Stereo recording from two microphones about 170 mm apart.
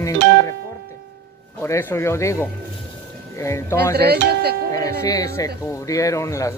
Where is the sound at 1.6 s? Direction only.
15° left (ahead or behind).